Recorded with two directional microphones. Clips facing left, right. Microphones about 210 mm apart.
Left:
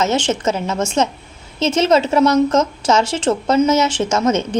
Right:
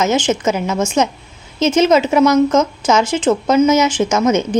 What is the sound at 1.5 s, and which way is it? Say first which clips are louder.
A woman's voice: right 2 dB; 30° left (ahead or behind).